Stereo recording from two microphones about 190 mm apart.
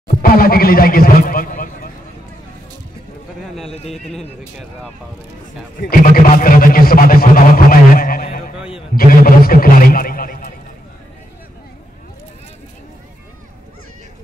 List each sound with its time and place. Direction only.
0.2 s a man's voice: 50° left (ahead or behind)
5.8 s speech: 50° left (ahead or behind)
8.9 s a sound: 50° left (ahead or behind)